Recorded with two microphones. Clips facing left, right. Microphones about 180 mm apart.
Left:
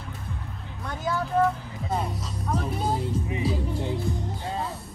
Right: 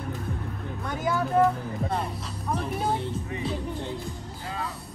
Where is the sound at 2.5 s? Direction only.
Centre (ahead or behind).